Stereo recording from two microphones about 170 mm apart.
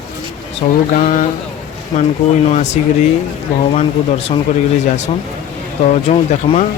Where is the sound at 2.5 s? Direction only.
40° left (ahead or behind).